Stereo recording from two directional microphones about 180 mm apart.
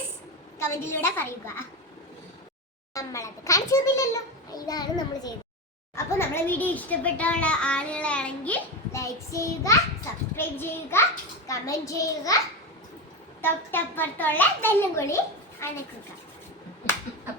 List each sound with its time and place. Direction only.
0.6 s a child's voice: 15° left (ahead or behind)
2.9 s a child's voice: 15° left (ahead or behind)
13.4 s a child's voice: 10° left (ahead or behind)